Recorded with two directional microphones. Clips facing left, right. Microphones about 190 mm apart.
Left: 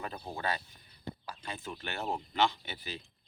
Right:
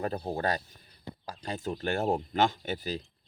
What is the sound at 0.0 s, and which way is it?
Speech, 40° right (ahead or behind).